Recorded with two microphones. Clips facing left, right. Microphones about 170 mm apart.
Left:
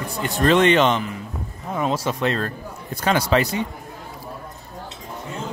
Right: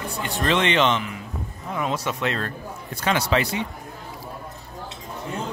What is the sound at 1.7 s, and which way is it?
Speech, 35° left (ahead or behind).